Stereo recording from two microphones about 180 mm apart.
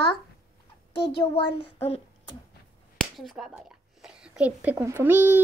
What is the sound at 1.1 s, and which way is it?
Child singing, 30° left (ahead or behind).